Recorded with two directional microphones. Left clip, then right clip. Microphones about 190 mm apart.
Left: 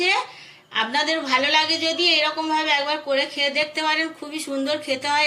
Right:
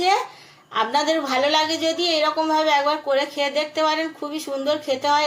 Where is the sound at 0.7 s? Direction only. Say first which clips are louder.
Right 2 dB; 25° right (ahead or behind).